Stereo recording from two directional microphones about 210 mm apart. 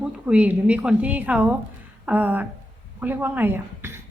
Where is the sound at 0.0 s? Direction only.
5° right (ahead or behind).